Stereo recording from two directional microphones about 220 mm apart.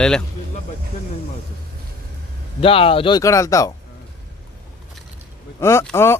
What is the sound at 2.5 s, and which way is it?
Speech, 25° left (ahead or behind).